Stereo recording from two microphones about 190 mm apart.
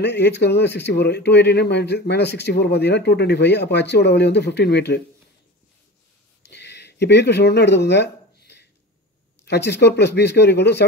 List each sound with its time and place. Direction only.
0.0 s speech: 60° left (ahead or behind)
6.4 s a sound: 65° left (ahead or behind)
9.4 s speech: 60° left (ahead or behind)